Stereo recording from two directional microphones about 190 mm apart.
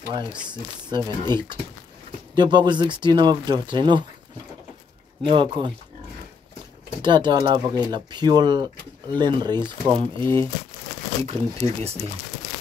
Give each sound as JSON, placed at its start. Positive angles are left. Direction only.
{"t": 0.8, "sound": "speech", "side_deg": -20}
{"t": 5.2, "sound": "speech", "side_deg": -25}
{"t": 7.0, "sound": "speech", "side_deg": -25}
{"t": 11.2, "sound": "speech", "side_deg": -30}